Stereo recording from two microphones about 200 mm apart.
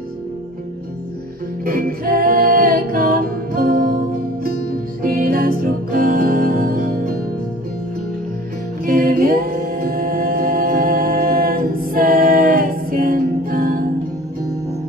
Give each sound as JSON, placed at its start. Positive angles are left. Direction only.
{"t": 1.6, "sound": "music", "side_deg": -45}
{"t": 8.8, "sound": "a capella", "side_deg": -45}